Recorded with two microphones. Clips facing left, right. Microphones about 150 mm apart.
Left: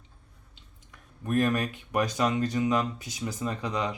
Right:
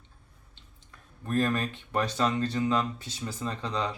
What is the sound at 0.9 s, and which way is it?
Speech, 15° left (ahead or behind).